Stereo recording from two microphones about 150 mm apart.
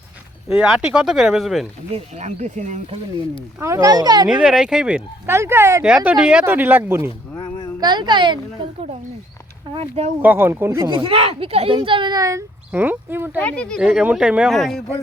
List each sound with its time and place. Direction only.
0.4 s speech: 5° right (ahead or behind)
1.9 s speech: 50° right (ahead or behind)
3.6 s speech: 20° right (ahead or behind)
4.3 s speech: 5° right (ahead or behind)
5.8 s speech: 5° right (ahead or behind)
7.3 s a sound: 30° left (ahead or behind)
7.8 s speech: 30° right (ahead or behind)
9.7 s speech: 40° right (ahead or behind)
10.2 s speech: 15° right (ahead or behind)
10.8 s speech: 35° right (ahead or behind); by 13.4 s 15° right (ahead or behind)
13.4 s speech: 5° left (ahead or behind)